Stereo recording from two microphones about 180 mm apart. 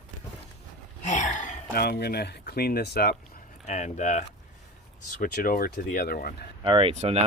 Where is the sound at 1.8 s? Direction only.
60° left (ahead or behind).